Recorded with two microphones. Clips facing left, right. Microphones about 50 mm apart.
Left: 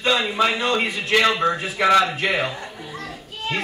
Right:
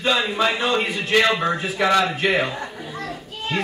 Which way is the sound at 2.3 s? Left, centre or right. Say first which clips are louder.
Right 2 dB; centre.